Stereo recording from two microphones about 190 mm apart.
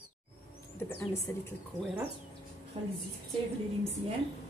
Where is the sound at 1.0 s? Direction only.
15° left (ahead or behind).